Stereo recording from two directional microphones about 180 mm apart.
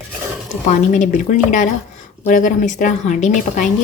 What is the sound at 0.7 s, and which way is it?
Speech, 45° left (ahead or behind).